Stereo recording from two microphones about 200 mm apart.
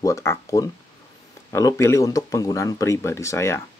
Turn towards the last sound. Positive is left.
turn(degrees=15)  # may be behind; listen again after turning